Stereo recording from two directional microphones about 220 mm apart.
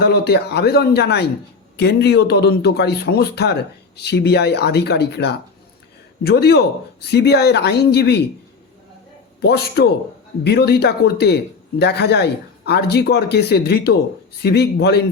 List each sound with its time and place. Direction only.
0.0 s speech: 45° left (ahead or behind)
9.4 s speech: 50° left (ahead or behind)